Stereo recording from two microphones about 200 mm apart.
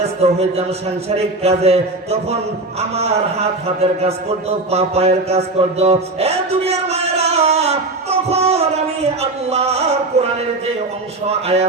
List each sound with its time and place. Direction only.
0.0 s a man's voice: 30° right (ahead or behind)
9.5 s a sound: 30° right (ahead or behind)
11.3 s a man's voice: 30° right (ahead or behind)